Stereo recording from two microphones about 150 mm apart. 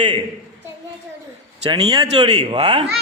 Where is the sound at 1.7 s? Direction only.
30° right (ahead or behind).